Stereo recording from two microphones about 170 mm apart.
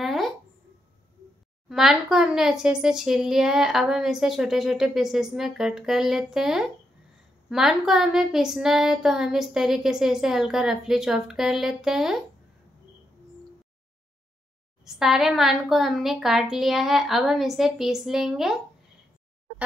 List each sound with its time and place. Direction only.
0.0 s a sound: centre (ahead or behind)
1.7 s speech: 5° right (ahead or behind)
14.9 s speech: centre (ahead or behind)